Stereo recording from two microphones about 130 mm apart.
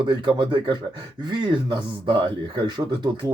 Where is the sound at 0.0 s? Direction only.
35° right (ahead or behind).